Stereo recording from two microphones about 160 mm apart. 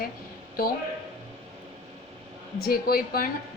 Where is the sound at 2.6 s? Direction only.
75° left (ahead or behind).